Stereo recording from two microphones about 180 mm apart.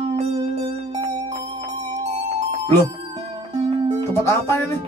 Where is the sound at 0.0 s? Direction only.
35° right (ahead or behind).